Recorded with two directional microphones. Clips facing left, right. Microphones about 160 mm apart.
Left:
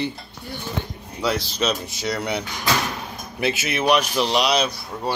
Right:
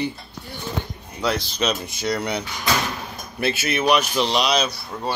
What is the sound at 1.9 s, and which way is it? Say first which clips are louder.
Speech: right 1 dB; 5° left (ahead or behind).